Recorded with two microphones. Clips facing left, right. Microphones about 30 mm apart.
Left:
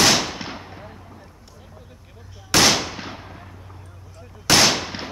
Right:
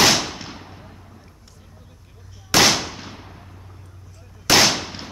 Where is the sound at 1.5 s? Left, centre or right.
Centre.